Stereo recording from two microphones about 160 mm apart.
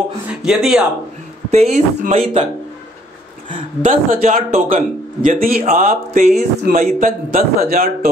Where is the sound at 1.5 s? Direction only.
45° right (ahead or behind).